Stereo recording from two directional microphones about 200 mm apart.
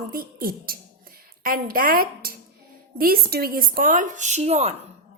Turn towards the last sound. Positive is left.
turn(degrees=-35)  # may be behind; listen again after turning